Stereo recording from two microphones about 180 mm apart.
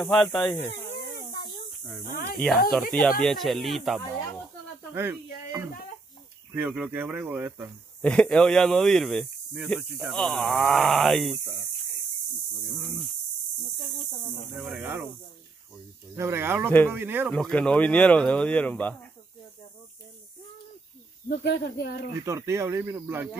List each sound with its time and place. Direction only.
0.0 s speech: 5° left (ahead or behind)
2.0 s speech: 55° left (ahead or behind)
3.2 s speech: centre (ahead or behind)
4.9 s a sound: 15° right (ahead or behind)
6.5 s speech: 10° right (ahead or behind)
8.0 s speech: 5° left (ahead or behind)
12.7 s speech: centre (ahead or behind)
14.6 s speech: 5° right (ahead or behind)
16.2 s speech: 15° right (ahead or behind)
17.3 s speech: 5° left (ahead or behind)
21.3 s speech: 65° left (ahead or behind)
22.2 s speech: 15° right (ahead or behind)